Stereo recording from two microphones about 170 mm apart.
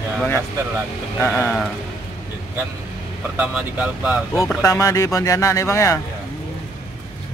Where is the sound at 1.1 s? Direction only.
10° left (ahead or behind).